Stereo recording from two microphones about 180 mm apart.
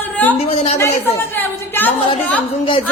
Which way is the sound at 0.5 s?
35° left (ahead or behind).